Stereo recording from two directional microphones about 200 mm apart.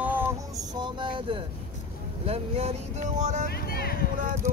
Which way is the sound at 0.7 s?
25° right (ahead or behind).